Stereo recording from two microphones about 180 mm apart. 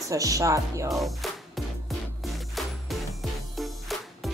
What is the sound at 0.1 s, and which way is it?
Speech, 20° right (ahead or behind).